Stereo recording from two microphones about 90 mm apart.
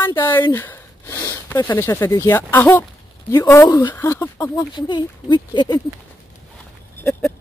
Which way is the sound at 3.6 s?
50° left (ahead or behind).